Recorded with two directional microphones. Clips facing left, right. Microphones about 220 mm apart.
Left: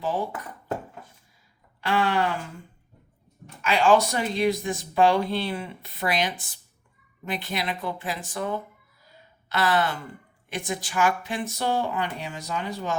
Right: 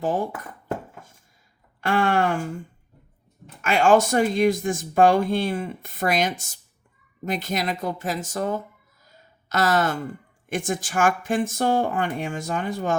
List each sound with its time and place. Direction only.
0.0 s speech: 50° right (ahead or behind)
1.8 s speech: 50° right (ahead or behind)
3.6 s speech: 50° right (ahead or behind)
9.0 s a sound: 45° right (ahead or behind)
10.5 s speech: 50° right (ahead or behind)